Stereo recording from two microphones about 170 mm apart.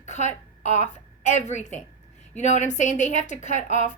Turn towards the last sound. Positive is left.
turn(degrees=45)  # may be behind; listen again after turning